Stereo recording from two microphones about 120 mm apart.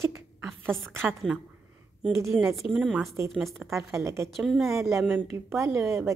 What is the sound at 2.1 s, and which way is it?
Speech, 25° right (ahead or behind).